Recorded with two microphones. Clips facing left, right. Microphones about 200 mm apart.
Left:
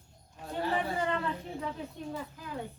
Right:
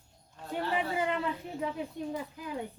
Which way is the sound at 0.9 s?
10° right (ahead or behind).